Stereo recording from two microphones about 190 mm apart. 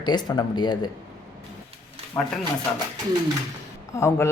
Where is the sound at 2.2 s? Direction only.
15° left (ahead or behind).